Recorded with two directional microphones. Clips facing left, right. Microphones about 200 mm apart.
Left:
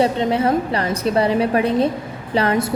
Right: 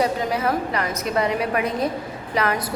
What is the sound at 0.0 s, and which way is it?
A woman's voice, 25° left (ahead or behind).